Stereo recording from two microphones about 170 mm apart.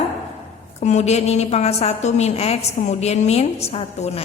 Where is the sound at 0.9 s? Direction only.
40° left (ahead or behind).